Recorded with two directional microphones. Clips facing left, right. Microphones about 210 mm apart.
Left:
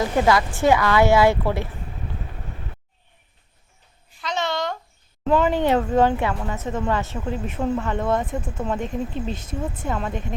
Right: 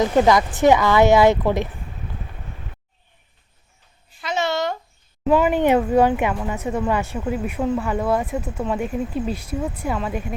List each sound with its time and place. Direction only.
0.0 s speech: 20° right (ahead or behind)
4.2 s a sound: 10° right (ahead or behind)
5.2 s speech: 10° right (ahead or behind)
9.3 s speech: 25° left (ahead or behind)
9.8 s speech: 5° right (ahead or behind)